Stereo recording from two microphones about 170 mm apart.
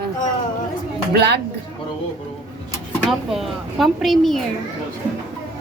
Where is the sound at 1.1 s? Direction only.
80° right.